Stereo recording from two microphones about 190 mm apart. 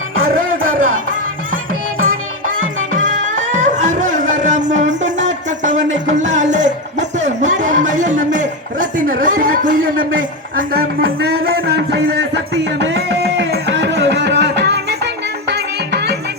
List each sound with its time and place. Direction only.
0.2 s music: 50° right (ahead or behind)
2.9 s music: 40° right (ahead or behind)
7.2 s a sound: 40° right (ahead or behind)
10.6 s speech: 50° right (ahead or behind)
12.8 s a sound: 65° right (ahead or behind)
15.4 s music: 60° right (ahead or behind)